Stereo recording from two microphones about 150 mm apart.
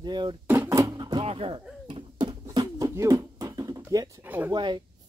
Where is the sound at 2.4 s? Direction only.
25° right (ahead or behind).